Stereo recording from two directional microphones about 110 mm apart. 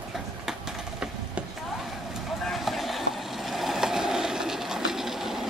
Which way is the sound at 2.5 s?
Centre (ahead or behind).